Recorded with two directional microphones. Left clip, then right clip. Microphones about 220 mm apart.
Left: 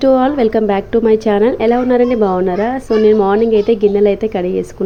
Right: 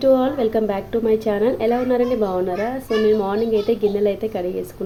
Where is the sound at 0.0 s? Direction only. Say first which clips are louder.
Left 5 dB; 25° left (ahead or behind).